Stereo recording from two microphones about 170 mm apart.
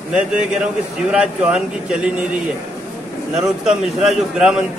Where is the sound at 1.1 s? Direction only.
5° right (ahead or behind).